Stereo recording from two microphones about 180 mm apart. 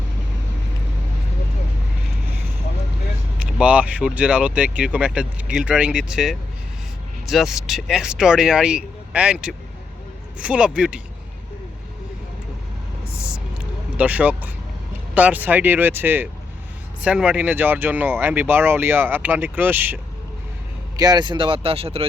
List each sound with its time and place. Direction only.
3.3 s speech: 5° right (ahead or behind)
13.9 s speech: 10° right (ahead or behind)
20.9 s speech: 20° right (ahead or behind)